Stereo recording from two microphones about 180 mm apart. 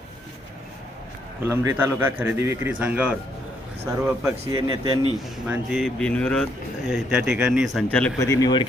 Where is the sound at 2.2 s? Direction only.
15° right (ahead or behind).